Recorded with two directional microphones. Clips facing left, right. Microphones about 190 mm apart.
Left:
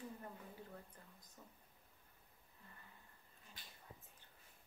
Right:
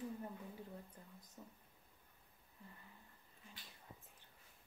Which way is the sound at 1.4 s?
20° right (ahead or behind).